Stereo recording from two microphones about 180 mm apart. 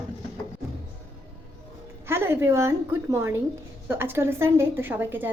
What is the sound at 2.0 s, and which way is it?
A woman's voice, 15° right (ahead or behind).